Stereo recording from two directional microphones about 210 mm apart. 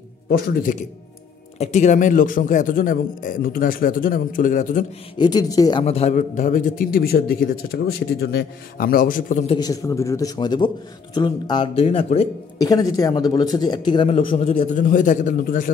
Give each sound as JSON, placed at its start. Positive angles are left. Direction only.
{"t": 0.3, "sound": "a man's voice", "side_deg": 40}
{"t": 5.1, "sound": "a man's voice", "side_deg": 20}
{"t": 9.5, "sound": "a man's voice", "side_deg": 20}
{"t": 12.5, "sound": "speech", "side_deg": 15}